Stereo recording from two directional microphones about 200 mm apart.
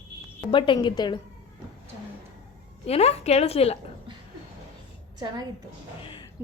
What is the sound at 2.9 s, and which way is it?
Speech, 30° left (ahead or behind).